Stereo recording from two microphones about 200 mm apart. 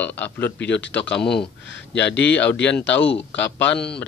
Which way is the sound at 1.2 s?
5° left (ahead or behind).